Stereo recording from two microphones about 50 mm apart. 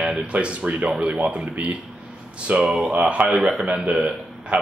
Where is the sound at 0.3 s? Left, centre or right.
Right.